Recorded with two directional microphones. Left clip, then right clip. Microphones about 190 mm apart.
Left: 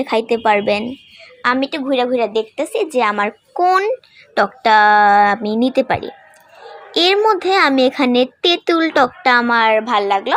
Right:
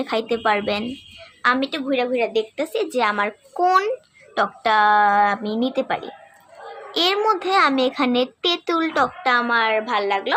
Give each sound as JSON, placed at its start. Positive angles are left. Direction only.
{"t": 0.0, "sound": "a woman's voice", "side_deg": 20}
{"t": 4.4, "sound": "a woman's voice", "side_deg": 25}